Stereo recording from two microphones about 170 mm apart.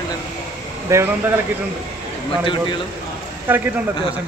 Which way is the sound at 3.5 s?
10° right (ahead or behind).